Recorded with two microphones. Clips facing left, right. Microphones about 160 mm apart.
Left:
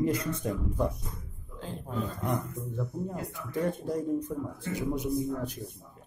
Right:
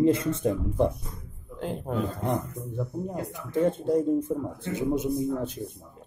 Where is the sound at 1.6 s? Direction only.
65° right (ahead or behind).